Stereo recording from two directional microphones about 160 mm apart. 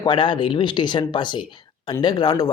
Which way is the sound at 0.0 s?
30° left (ahead or behind).